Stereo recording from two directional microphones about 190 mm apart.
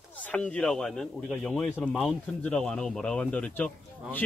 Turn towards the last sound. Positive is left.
turn(degrees=10)  # may be behind; listen again after turning